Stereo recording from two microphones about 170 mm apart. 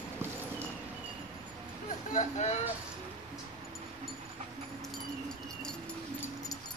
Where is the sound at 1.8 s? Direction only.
45° left (ahead or behind).